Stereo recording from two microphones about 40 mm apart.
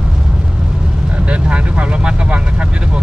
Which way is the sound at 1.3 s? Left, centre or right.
Right.